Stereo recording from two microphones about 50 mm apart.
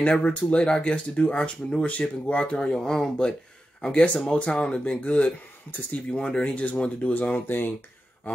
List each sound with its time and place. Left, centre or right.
0.0 s speech: left
2.5 s speech: centre; by 7.7 s left